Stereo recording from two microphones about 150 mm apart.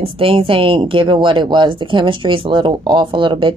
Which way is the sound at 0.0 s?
35° right (ahead or behind).